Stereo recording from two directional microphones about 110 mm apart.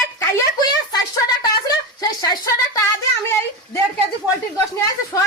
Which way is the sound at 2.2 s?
35° left (ahead or behind).